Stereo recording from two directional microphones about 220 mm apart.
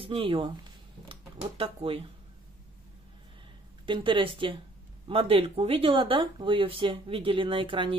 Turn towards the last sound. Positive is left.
turn(degrees=-25)  # may be behind; listen again after turning